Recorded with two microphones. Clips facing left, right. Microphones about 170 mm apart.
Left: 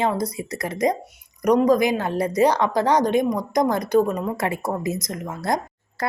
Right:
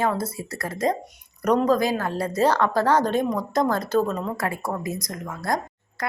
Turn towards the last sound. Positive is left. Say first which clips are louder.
# left 2 dB
turn(degrees=20)  # may be behind; listen again after turning